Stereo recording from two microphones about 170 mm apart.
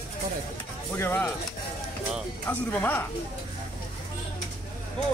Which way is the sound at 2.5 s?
10° left (ahead or behind).